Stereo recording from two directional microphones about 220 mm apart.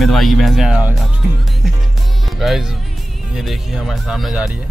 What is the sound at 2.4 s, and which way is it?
Speech, centre (ahead or behind).